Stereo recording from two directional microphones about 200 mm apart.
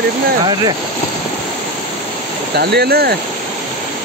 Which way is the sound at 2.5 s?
55° right (ahead or behind).